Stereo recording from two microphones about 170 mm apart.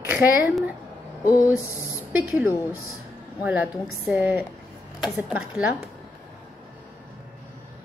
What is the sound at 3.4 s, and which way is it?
A woman's voice, 10° right (ahead or behind).